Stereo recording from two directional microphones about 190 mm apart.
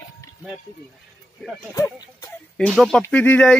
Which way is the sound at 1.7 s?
15° left (ahead or behind).